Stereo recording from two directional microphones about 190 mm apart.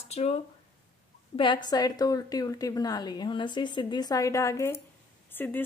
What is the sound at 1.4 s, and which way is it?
A woman's voice, 25° left (ahead or behind).